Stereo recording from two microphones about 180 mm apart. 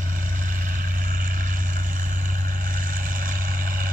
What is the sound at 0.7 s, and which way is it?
Vehicle, 50° right (ahead or behind).